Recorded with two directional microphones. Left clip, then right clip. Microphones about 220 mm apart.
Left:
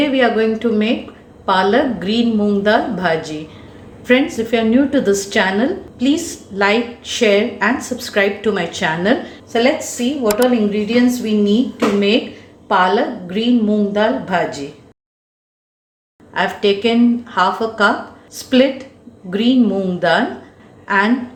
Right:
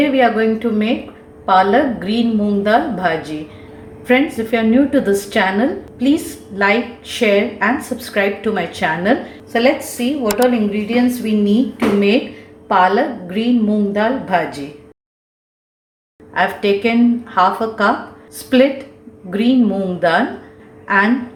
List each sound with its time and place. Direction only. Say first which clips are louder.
0.0 s a woman's voice: right 1 dB; 5° left (ahead or behind)
16.3 s a woman's voice: right 1 dB; centre (ahead or behind)